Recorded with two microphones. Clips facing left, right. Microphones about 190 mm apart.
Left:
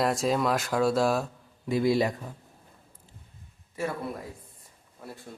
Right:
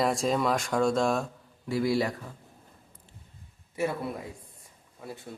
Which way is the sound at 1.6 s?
20° left (ahead or behind).